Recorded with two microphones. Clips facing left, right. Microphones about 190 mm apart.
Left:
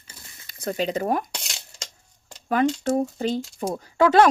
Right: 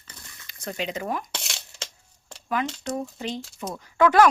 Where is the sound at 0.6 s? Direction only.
40° left (ahead or behind).